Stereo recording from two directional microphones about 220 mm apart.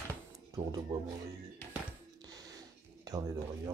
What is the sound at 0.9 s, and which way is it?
Speech, 25° right (ahead or behind).